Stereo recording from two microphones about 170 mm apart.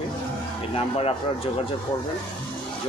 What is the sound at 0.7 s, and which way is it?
Speech, 35° left (ahead or behind).